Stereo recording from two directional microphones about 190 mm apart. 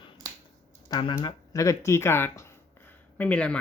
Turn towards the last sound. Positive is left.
turn(degrees=5)  # may be behind; listen again after turning